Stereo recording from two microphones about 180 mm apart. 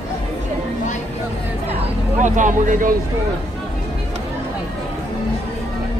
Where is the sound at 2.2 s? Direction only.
45° right (ahead or behind).